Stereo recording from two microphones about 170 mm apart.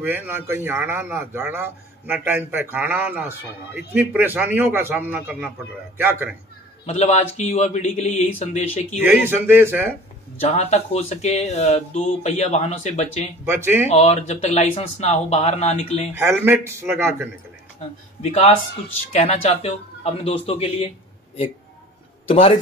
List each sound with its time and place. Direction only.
0.0 s a man's voice: 10° right (ahead or behind)
6.9 s speech: 40° left (ahead or behind)
9.0 s a man's voice: 10° right (ahead or behind)
10.5 s speech: 40° left (ahead or behind)
13.5 s a man's voice: 15° right (ahead or behind)
13.8 s speech: 40° left (ahead or behind)
16.2 s a man's voice: 15° right (ahead or behind)
17.7 s speech: 40° left (ahead or behind)
22.3 s speech: 30° left (ahead or behind)